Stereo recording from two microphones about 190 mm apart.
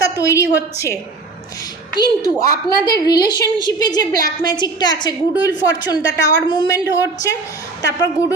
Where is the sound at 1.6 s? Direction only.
20° left (ahead or behind).